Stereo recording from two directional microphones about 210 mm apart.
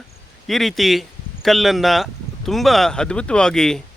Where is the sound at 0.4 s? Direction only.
Centre (ahead or behind).